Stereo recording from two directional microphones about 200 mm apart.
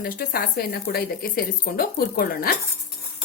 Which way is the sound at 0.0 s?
50° left (ahead or behind).